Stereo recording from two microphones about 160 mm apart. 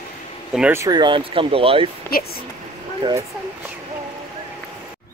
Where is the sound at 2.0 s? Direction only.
70° left (ahead or behind).